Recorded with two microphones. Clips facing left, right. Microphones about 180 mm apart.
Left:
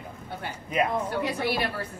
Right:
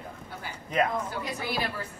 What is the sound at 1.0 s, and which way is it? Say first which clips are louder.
Speech: left 6 dB; 65° left (ahead or behind).